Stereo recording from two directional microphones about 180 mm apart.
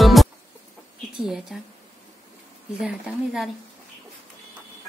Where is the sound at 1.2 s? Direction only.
Centre (ahead or behind).